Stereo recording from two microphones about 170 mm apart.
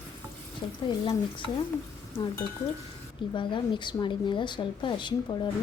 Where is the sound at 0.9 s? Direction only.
30° left (ahead or behind).